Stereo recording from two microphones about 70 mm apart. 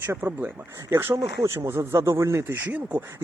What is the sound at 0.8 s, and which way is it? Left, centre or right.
Speech, right.